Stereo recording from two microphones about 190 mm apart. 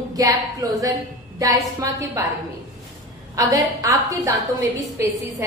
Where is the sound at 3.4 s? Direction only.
15° right (ahead or behind).